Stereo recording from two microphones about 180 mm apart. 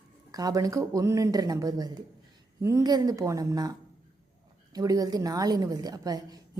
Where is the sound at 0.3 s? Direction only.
20° right (ahead or behind).